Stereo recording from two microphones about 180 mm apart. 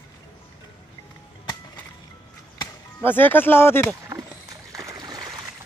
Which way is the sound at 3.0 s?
10° left (ahead or behind).